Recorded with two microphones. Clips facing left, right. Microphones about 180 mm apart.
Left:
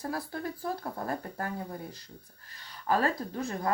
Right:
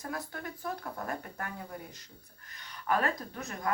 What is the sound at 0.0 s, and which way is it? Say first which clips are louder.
Speech: left 4 dB; 30° left (ahead or behind).